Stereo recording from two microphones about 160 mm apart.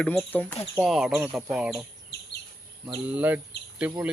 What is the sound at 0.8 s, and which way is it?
Speech, 5° right (ahead or behind).